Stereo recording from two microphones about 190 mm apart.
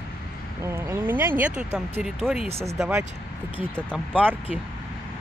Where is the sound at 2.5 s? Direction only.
30° right (ahead or behind).